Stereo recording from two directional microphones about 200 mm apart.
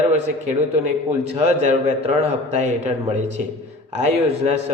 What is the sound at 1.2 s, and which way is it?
A man's voice, 30° right (ahead or behind).